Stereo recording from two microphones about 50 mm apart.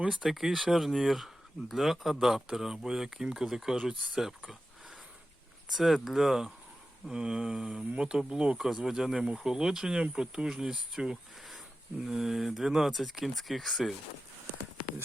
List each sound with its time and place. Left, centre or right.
0.0 s speech: centre
5.7 s speech: centre